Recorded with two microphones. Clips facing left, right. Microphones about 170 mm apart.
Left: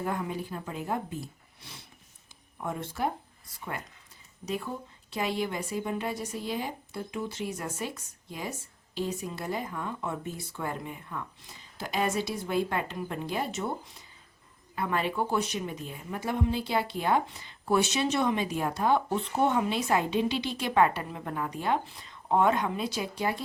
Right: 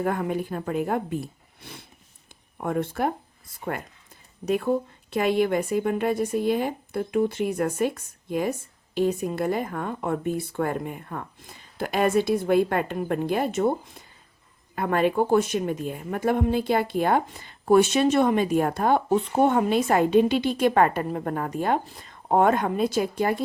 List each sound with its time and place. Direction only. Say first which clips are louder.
0.0 s speech: right 7 dB; 60° right (ahead or behind)